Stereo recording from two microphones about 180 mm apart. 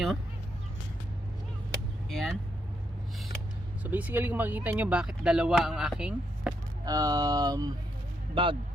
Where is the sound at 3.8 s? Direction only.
10° right (ahead or behind).